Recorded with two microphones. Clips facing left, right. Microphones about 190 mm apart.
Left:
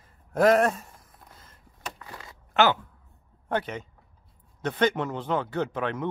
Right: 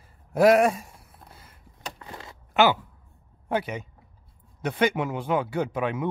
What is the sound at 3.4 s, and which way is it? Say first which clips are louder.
Speech: right 1 dB; 10° right (ahead or behind).